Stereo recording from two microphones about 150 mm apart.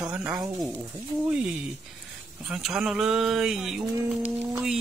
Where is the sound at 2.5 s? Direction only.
5° right (ahead or behind).